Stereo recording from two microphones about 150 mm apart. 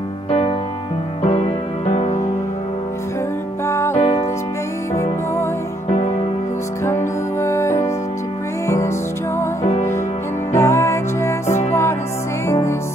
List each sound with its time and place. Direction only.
1.2 s music: 40° left (ahead or behind)
3.6 s music: 15° left (ahead or behind)
5.9 s music: 40° left (ahead or behind)
6.8 s music: 20° left (ahead or behind)
10.5 s music: 20° left (ahead or behind)